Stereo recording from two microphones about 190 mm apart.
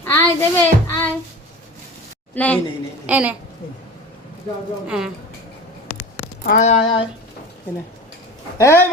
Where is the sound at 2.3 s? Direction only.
5° left (ahead or behind).